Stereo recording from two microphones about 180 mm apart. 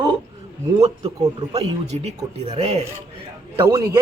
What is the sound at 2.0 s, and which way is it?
Speech, 35° right (ahead or behind).